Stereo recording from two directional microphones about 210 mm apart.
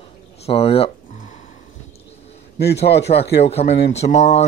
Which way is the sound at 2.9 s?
50° left (ahead or behind).